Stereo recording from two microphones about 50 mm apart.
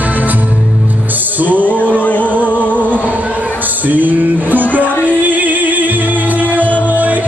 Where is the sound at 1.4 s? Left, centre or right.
Right.